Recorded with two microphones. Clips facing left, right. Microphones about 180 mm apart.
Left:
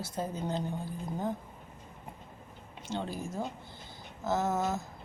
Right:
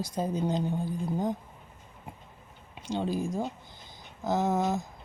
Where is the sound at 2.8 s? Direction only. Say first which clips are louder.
Right 6 dB; 15° right (ahead or behind).